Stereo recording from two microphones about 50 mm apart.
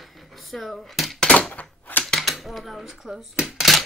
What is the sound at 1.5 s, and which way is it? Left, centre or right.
Typewriter, left.